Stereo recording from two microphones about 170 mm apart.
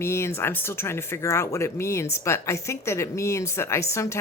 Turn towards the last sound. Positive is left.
turn(degrees=15)  # may be behind; listen again after turning